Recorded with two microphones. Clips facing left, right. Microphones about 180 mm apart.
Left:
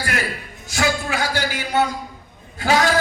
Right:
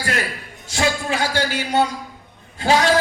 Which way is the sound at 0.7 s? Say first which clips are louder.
Right 1 dB; 25° right (ahead or behind).